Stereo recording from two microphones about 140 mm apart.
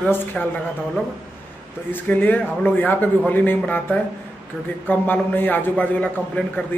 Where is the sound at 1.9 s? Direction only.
10° left (ahead or behind).